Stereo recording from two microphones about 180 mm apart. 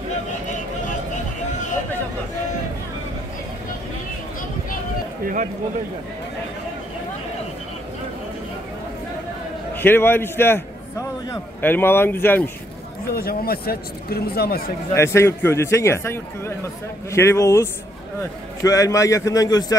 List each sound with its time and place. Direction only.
5.2 s a man's voice: 45° right (ahead or behind)
9.8 s a man's voice: 10° left (ahead or behind)
13.1 s speech: 55° left (ahead or behind)
15.0 s a man's voice: 15° left (ahead or behind)